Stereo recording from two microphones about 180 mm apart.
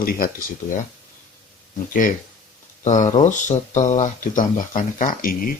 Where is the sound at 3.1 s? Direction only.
40° left (ahead or behind).